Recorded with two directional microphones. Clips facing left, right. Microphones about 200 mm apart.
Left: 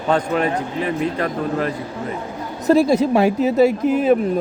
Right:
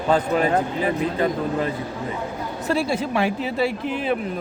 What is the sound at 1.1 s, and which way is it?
Speech, 25° right (ahead or behind).